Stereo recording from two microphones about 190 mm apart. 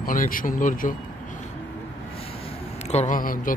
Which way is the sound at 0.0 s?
45° left (ahead or behind).